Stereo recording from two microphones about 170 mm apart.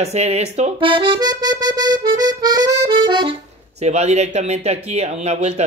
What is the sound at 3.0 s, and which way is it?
Accordion, 25° right (ahead or behind).